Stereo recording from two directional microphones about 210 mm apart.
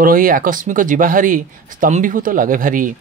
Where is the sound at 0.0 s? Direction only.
40° right (ahead or behind).